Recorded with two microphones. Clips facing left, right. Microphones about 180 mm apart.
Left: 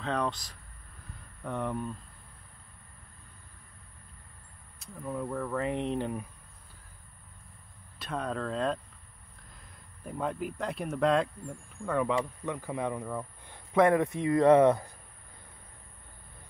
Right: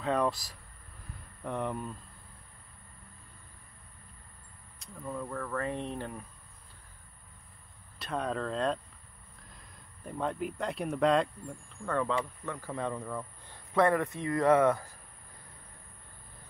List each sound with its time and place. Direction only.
0.0 s speech: 5° right (ahead or behind)
4.7 s speech: 15° left (ahead or behind)
8.0 s speech: centre (ahead or behind)
10.0 s speech: 5° left (ahead or behind)
12.0 s speech: 15° left (ahead or behind)